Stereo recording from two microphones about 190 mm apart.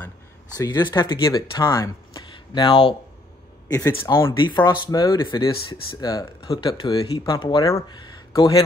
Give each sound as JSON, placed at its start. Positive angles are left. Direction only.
{"t": 0.6, "sound": "speech", "side_deg": 20}